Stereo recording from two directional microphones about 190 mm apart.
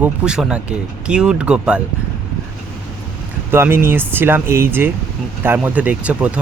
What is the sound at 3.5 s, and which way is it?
Speech, 10° right (ahead or behind).